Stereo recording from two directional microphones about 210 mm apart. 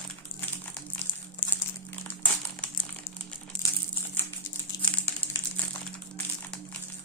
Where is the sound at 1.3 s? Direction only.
10° left (ahead or behind).